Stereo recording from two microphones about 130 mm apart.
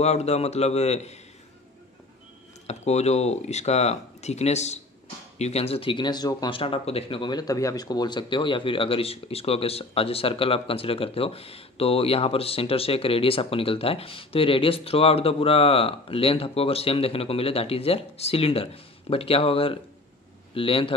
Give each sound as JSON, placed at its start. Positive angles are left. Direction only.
{"t": 0.0, "sound": "speech", "side_deg": 55}
{"t": 2.6, "sound": "speech", "side_deg": 55}
{"t": 6.6, "sound": "speech", "side_deg": 45}